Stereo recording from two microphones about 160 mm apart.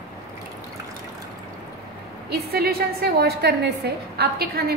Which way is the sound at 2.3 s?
80° right.